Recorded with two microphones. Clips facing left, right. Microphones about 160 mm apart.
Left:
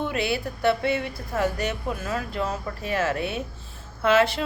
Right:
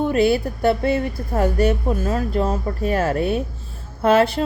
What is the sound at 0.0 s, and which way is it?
Speech, 45° right (ahead or behind).